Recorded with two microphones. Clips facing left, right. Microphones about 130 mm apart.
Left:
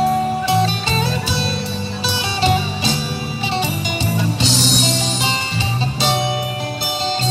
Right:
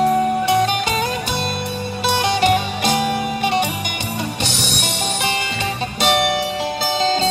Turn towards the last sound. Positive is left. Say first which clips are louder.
# right 2 dB
turn(degrees=-60)  # may be behind; listen again after turning